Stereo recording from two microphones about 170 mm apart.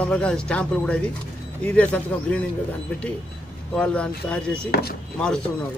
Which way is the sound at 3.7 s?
5° left (ahead or behind).